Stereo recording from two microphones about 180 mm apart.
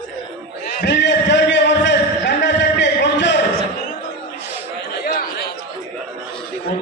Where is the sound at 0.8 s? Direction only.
75° left (ahead or behind).